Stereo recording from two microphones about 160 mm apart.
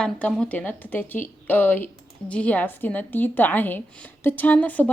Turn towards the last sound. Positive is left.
turn(degrees=10)  # may be behind; listen again after turning